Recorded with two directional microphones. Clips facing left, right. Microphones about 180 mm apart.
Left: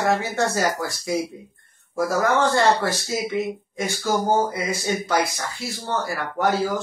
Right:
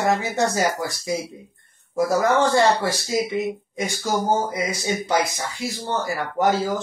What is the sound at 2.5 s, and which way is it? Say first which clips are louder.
Speech: right 1 dB; 15° right (ahead or behind).